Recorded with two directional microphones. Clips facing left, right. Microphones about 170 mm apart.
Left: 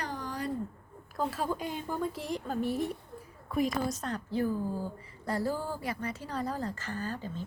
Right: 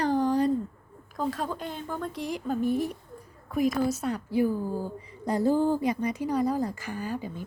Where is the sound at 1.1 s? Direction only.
5° left (ahead or behind).